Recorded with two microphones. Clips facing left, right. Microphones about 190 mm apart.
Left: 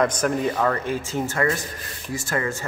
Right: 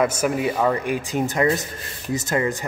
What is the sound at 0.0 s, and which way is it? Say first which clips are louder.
Speech: right 1 dB; 5° right (ahead or behind).